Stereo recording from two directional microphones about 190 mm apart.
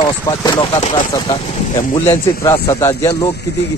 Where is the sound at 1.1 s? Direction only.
20° left (ahead or behind).